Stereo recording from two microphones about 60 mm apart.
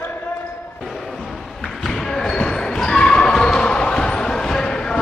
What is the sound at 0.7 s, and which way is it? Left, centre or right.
Basketball bounce, centre.